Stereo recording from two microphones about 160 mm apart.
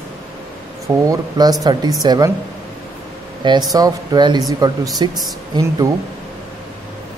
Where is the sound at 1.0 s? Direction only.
25° right (ahead or behind).